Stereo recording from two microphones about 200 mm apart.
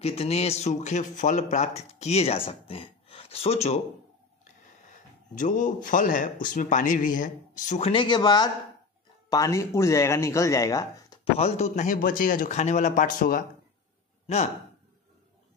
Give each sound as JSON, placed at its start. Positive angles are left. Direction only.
{"t": 0.0, "sound": "speech", "side_deg": 30}
{"t": 4.8, "sound": "speech", "side_deg": 40}
{"t": 11.3, "sound": "speech", "side_deg": 35}